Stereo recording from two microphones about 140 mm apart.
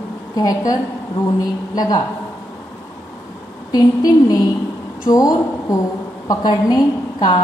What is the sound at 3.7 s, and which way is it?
A woman's voice, 25° left (ahead or behind).